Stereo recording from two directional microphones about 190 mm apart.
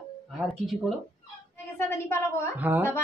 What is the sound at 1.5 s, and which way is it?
Speech, 15° left (ahead or behind).